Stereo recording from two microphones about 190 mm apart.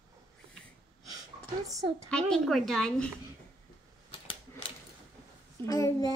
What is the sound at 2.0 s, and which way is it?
A child's voice, 5° left (ahead or behind).